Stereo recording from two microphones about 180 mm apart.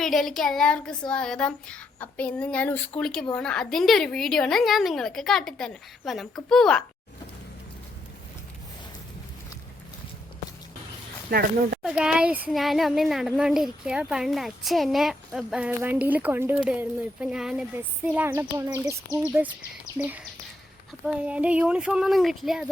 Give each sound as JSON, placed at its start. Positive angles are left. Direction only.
{"t": 0.0, "sound": "speech", "side_deg": 0}
{"t": 11.3, "sound": "speech", "side_deg": -55}
{"t": 11.8, "sound": "speech", "side_deg": -5}